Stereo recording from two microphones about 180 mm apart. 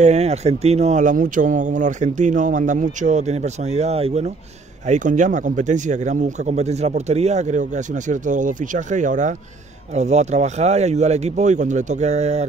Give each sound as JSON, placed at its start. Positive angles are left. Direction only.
{"t": 0.0, "sound": "speech", "side_deg": -40}